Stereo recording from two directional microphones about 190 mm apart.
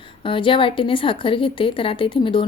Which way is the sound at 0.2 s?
25° left (ahead or behind).